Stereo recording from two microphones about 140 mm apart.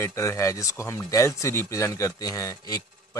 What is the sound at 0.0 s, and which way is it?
Speech, 20° left (ahead or behind).